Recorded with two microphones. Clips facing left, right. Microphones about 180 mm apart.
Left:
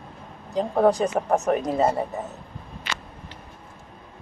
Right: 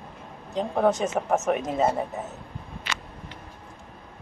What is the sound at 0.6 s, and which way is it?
Speech, centre (ahead or behind).